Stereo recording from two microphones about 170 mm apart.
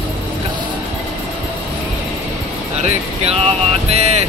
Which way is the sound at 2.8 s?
40° right (ahead or behind).